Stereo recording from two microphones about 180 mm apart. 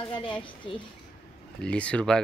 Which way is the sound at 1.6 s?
5° left (ahead or behind).